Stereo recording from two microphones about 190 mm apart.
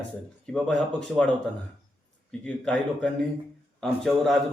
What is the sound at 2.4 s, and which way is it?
A man's voice, 5° left (ahead or behind).